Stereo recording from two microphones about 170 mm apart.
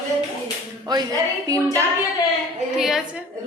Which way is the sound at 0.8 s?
25° right (ahead or behind).